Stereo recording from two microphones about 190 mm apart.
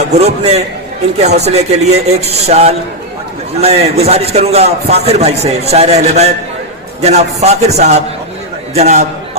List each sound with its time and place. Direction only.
0.1 s a man's voice: 35° right (ahead or behind)